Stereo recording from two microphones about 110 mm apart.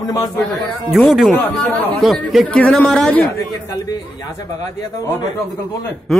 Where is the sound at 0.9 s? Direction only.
Centre (ahead or behind).